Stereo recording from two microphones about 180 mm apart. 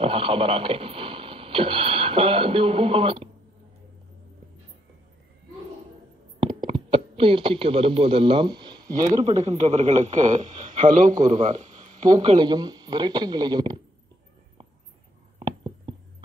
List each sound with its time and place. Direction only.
0.0 s speech: 30° right (ahead or behind)
6.4 s speech: 30° right (ahead or behind)
9.3 s speech: 35° right (ahead or behind)
12.1 s speech: 25° right (ahead or behind)
15.3 s a sound: 25° right (ahead or behind)